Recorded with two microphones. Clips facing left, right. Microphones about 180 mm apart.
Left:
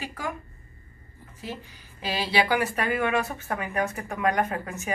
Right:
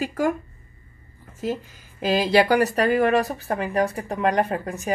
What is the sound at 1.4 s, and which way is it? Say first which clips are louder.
Speech: right 10 dB; 45° right (ahead or behind).